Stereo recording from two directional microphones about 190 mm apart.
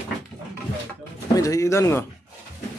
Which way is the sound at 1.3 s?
20° left (ahead or behind).